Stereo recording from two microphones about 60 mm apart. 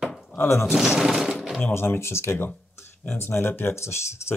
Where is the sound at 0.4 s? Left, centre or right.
Left.